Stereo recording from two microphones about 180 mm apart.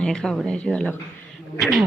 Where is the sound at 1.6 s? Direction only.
Centre (ahead or behind).